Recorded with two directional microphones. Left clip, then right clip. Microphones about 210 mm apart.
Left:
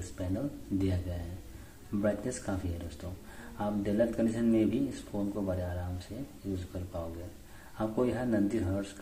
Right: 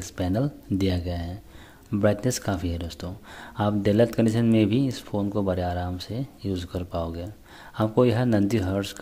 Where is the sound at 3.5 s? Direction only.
55° right (ahead or behind).